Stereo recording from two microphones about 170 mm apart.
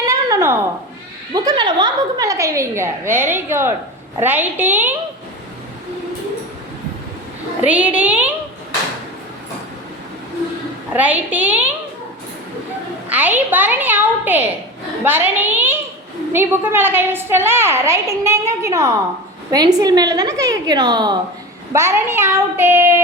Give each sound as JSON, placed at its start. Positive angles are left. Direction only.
{"t": 0.0, "sound": "a sound", "side_deg": -20}
{"t": 1.3, "sound": "a woman's voice", "side_deg": -25}
{"t": 7.6, "sound": "a woman's voice", "side_deg": -10}
{"t": 10.9, "sound": "a woman's voice", "side_deg": -10}
{"t": 13.1, "sound": "a woman's voice", "side_deg": -10}